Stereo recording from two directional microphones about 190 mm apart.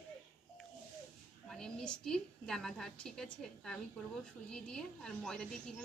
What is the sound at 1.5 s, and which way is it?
A woman's voice, 5° left (ahead or behind).